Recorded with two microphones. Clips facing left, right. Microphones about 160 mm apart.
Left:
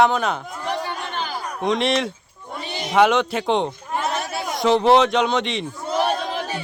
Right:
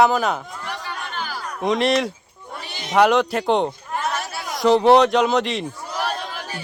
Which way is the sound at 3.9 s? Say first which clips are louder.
Left 1 dB; 20° left (ahead or behind).